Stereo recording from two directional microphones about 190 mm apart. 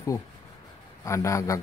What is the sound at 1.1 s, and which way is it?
Speech, 15° left (ahead or behind).